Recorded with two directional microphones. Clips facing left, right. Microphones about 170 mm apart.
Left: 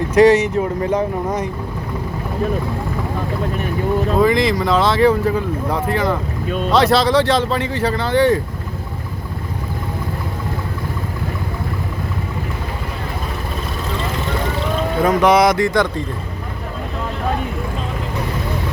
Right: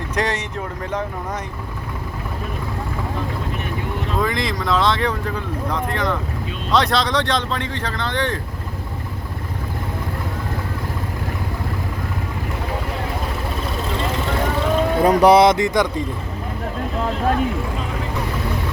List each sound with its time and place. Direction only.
0.1 s speech: 5° left (ahead or behind)
4.2 s speech: centre (ahead or behind)
15.0 s speech: 35° right (ahead or behind); by 15.9 s 20° right (ahead or behind)